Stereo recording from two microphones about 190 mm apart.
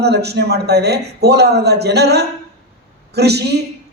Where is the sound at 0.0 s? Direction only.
60° right (ahead or behind).